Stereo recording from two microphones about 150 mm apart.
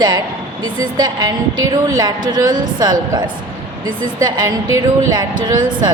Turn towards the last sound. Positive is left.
turn(degrees=-30)  # may be behind; listen again after turning